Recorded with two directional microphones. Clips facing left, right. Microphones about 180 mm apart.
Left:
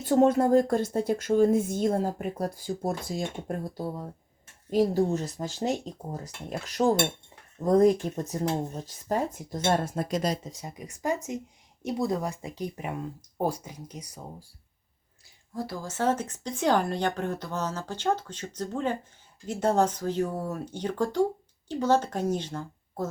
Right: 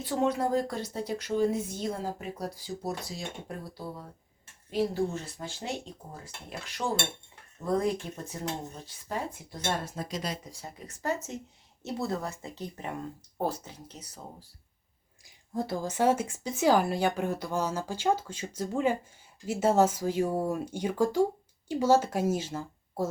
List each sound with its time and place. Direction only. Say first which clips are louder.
0.0 s speech: left 7 dB; 50° left (ahead or behind)
4.7 s speech: left 5 dB; 40° left (ahead or behind)
10.4 s speech: left 4 dB; 20° left (ahead or behind)
15.5 s speech: right 3 dB; 25° right (ahead or behind); by 23.0 s 5° right (ahead or behind)